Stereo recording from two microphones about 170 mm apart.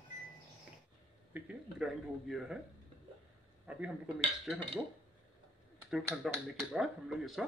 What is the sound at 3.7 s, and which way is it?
Speech, 5° right (ahead or behind).